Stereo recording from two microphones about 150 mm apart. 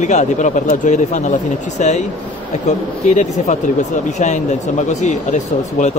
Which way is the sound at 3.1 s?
55° left (ahead or behind).